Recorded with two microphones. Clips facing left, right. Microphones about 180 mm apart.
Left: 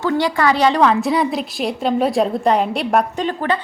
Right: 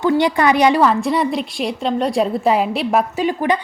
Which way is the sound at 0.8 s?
Centre (ahead or behind).